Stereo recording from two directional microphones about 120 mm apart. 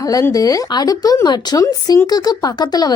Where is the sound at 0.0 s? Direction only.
30° left (ahead or behind).